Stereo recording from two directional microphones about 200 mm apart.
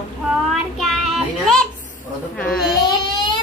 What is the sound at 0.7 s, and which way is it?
Child singing, centre (ahead or behind).